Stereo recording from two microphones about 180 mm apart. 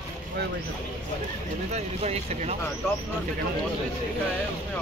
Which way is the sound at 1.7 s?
35° right (ahead or behind).